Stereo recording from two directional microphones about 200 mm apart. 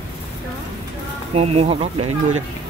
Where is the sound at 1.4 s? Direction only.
30° right (ahead or behind).